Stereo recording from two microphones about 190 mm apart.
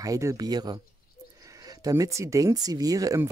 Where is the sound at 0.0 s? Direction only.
15° right (ahead or behind).